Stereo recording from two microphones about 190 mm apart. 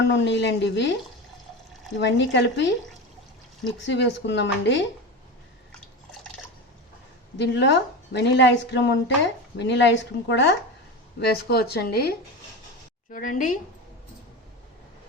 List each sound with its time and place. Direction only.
0.0 s speech: 70° left (ahead or behind)
2.0 s speech: 70° left (ahead or behind)
3.8 s speech: 70° left (ahead or behind)
7.3 s a woman's voice: 65° left (ahead or behind)
11.2 s a woman's voice: 55° left (ahead or behind)
13.1 s a woman's voice: 45° left (ahead or behind)